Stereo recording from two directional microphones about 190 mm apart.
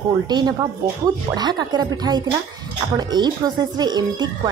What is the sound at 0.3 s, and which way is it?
Speech, 20° right (ahead or behind).